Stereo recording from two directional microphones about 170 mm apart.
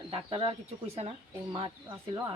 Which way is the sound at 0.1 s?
30° right (ahead or behind).